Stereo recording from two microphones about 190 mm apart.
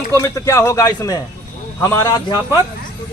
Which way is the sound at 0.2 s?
15° left (ahead or behind).